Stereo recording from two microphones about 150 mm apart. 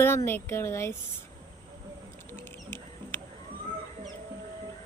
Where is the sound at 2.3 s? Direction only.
15° left (ahead or behind).